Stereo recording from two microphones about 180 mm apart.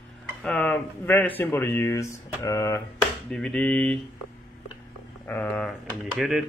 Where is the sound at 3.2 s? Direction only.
5° left (ahead or behind).